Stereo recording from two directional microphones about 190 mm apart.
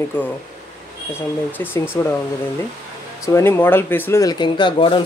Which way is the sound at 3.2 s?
15° left (ahead or behind).